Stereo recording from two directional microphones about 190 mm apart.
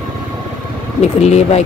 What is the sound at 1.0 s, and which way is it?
Speech, 35° left (ahead or behind).